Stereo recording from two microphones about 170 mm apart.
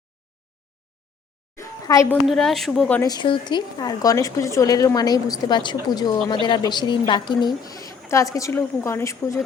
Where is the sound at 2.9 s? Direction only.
20° left (ahead or behind).